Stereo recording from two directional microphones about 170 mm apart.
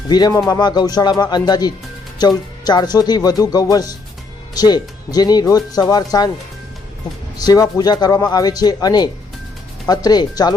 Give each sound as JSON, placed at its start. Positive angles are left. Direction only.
{"t": 0.1, "sound": "speech", "side_deg": 20}
{"t": 7.3, "sound": "speech", "side_deg": 20}